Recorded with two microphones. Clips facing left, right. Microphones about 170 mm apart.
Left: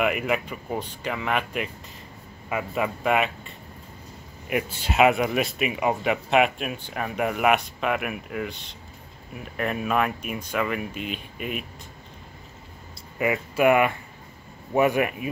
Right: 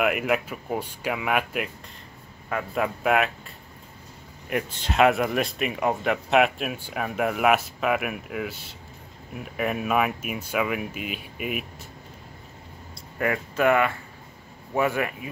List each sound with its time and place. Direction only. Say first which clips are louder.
0.0 s speech: right 1 dB; centre (ahead or behind)
13.2 s speech: left 2 dB; 10° left (ahead or behind)